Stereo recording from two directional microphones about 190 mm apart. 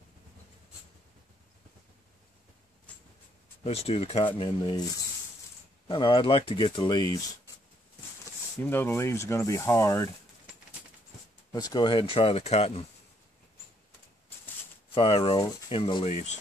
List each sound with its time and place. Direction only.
3.6 s speech: 35° left (ahead or behind)
8.6 s speech: 10° left (ahead or behind)
11.5 s speech: 20° left (ahead or behind)
15.0 s speech: 30° left (ahead or behind)